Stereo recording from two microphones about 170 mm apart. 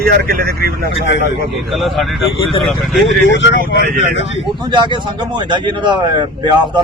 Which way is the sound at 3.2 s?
90° left.